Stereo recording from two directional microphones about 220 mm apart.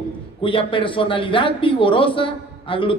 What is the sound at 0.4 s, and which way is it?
Speech, 25° left (ahead or behind).